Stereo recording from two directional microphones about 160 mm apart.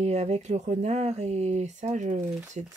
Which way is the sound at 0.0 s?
45° right (ahead or behind).